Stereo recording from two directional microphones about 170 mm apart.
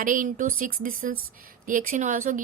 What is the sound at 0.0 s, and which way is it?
Speech, 50° right (ahead or behind).